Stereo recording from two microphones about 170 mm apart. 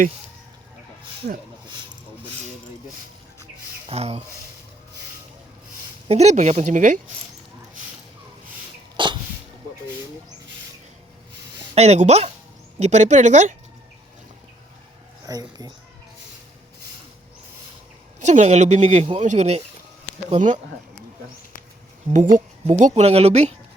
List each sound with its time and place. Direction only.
3.8 s speech: 35° right (ahead or behind)
6.1 s speech: 40° right (ahead or behind)
9.0 s cough: 30° right (ahead or behind)
11.7 s speech: 40° right (ahead or behind)
15.3 s speech: 25° right (ahead or behind)
18.2 s speech: 45° right (ahead or behind)
22.1 s speech: 50° right (ahead or behind)